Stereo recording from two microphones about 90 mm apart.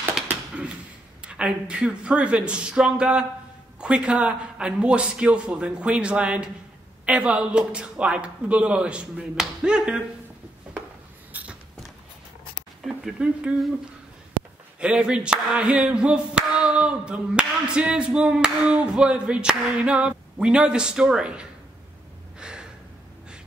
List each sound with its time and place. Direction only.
0.3 s a sound: 15° right (ahead or behind)
1.2 s clapping: 10° right (ahead or behind)
11.3 s a sound: 15° right (ahead or behind)
12.8 s speech: 5° right (ahead or behind)
14.8 s clapping: 10° right (ahead or behind)
22.4 s gasp: 10° right (ahead or behind)